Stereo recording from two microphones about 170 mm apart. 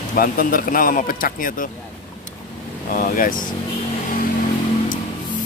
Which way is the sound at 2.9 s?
55° left (ahead or behind).